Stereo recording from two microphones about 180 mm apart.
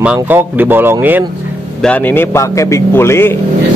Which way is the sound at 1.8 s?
10° left (ahead or behind).